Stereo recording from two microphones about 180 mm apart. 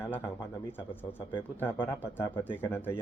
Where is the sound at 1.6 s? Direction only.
10° left (ahead or behind).